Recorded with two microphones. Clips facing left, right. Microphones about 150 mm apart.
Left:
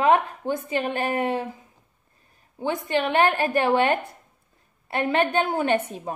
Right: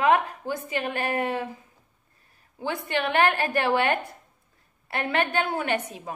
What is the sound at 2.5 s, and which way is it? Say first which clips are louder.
A woman's voice: left 4 dB; 20° left (ahead or behind).